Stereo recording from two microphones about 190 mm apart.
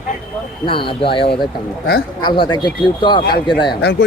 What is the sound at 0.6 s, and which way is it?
Speech, 25° left (ahead or behind).